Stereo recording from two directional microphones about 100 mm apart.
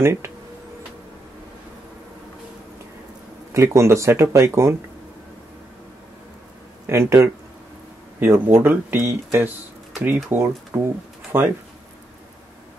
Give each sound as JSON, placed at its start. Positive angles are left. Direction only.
{"t": 0.0, "sound": "speech", "side_deg": -25}
{"t": 3.5, "sound": "speech", "side_deg": -30}
{"t": 6.9, "sound": "speech", "side_deg": -25}